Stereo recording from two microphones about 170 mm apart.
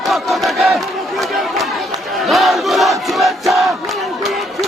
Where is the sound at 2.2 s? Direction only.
Centre (ahead or behind).